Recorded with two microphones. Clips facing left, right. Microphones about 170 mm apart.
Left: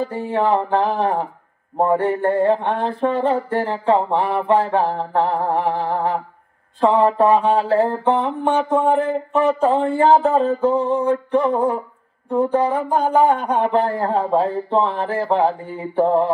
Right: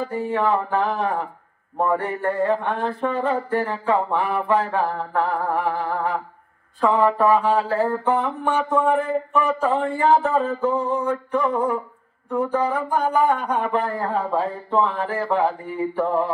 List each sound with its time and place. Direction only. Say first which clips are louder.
0.1 s a man's voice: left 1 dB; 30° left (ahead or behind)
1.8 s mantra: left 5 dB; 30° left (ahead or behind)
12.3 s a man's voice: left 4 dB; 30° left (ahead or behind)